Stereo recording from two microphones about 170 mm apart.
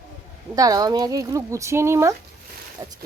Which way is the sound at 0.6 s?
20° right (ahead or behind).